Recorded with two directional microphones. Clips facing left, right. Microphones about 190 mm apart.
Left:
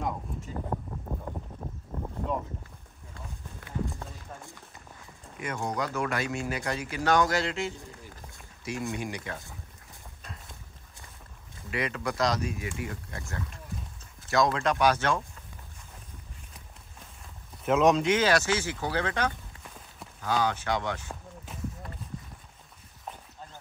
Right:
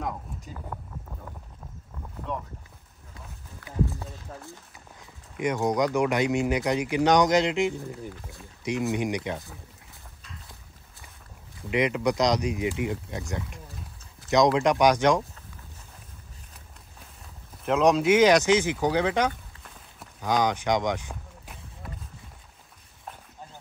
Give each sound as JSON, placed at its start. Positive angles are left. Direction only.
{"t": 1.1, "sound": "boat", "side_deg": 35}
{"t": 3.8, "sound": "clip-clop", "side_deg": 0}
{"t": 5.4, "sound": "speech", "side_deg": -15}
{"t": 11.7, "sound": "speech", "side_deg": -15}
{"t": 17.6, "sound": "speech", "side_deg": 0}
{"t": 21.1, "sound": "a sound", "side_deg": 0}